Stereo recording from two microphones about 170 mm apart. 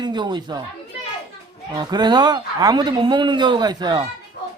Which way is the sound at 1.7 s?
25° right (ahead or behind).